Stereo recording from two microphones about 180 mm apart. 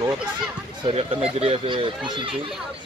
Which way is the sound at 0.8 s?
35° right (ahead or behind).